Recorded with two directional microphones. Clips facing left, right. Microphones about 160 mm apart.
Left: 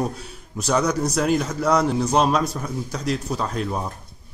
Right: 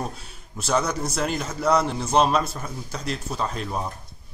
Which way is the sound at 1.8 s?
5° left (ahead or behind).